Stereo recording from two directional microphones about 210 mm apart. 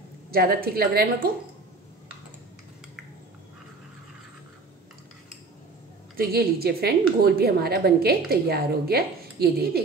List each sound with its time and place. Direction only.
0.3 s a woman's voice: 45° right (ahead or behind)
6.1 s a woman's voice: 45° right (ahead or behind)